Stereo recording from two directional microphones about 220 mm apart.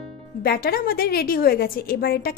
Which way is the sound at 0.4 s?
45° left (ahead or behind).